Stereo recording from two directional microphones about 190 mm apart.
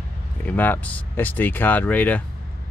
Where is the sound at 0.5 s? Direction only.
10° left (ahead or behind).